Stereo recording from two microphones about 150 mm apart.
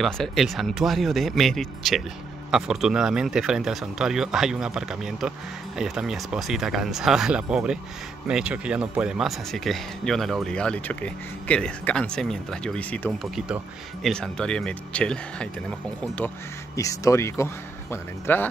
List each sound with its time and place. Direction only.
0.0 s speech: centre (ahead or behind)
16.7 s speech: 20° left (ahead or behind)